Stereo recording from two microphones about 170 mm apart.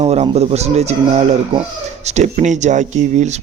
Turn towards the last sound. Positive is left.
turn(degrees=-45)  # may be behind; listen again after turning